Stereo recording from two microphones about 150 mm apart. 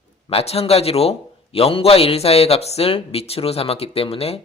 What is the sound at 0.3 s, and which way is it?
A man's voice, 40° left (ahead or behind).